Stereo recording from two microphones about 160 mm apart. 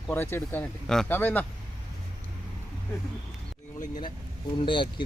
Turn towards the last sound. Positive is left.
turn(degrees=30)  # may be behind; listen again after turning